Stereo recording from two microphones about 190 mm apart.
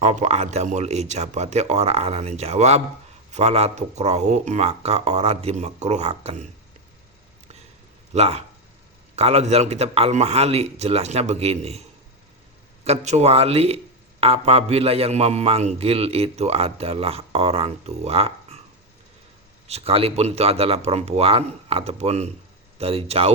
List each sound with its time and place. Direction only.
0.0 s a man's voice: 40° right (ahead or behind)
8.1 s a man's voice: 35° right (ahead or behind)
12.8 s a man's voice: 35° right (ahead or behind)
19.6 s a man's voice: 35° right (ahead or behind)